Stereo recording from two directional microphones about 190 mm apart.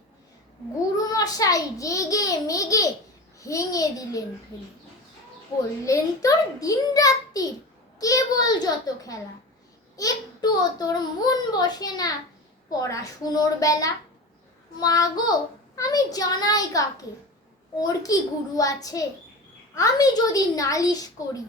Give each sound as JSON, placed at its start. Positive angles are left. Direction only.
{"t": 0.9, "sound": "a child's voice", "side_deg": 20}
{"t": 5.8, "sound": "a child's voice", "side_deg": 15}